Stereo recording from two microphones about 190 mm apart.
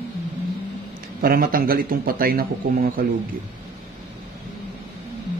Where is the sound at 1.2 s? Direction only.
50° right (ahead or behind).